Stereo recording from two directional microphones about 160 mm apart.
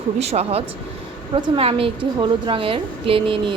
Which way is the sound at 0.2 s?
40° right (ahead or behind).